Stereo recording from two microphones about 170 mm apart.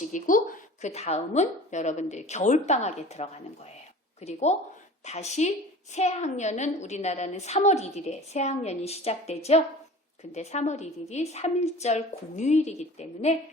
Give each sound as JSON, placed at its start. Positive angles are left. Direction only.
{"t": 0.1, "sound": "a woman's voice", "side_deg": 50}